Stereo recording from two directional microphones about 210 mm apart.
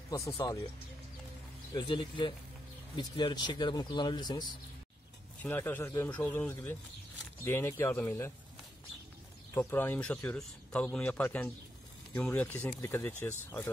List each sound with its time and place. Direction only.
0.1 s speech: 15° left (ahead or behind)
1.8 s speech: 20° left (ahead or behind)
5.4 s speech: 10° left (ahead or behind)
9.5 s speech: 10° left (ahead or behind)